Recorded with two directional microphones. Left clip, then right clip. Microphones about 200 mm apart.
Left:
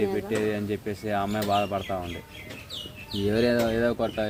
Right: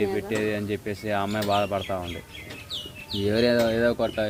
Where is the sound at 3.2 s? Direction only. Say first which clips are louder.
Right 2 dB; 10° right (ahead or behind).